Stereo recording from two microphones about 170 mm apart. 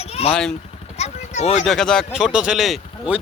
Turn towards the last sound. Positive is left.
turn(degrees=-5)  # may be behind; listen again after turning